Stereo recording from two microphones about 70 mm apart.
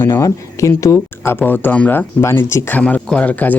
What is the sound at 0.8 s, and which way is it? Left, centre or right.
Speech, left.